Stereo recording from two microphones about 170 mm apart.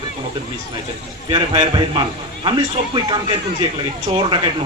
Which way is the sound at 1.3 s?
30° right (ahead or behind).